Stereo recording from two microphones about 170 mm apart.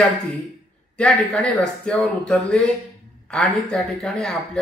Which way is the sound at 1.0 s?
5° left (ahead or behind).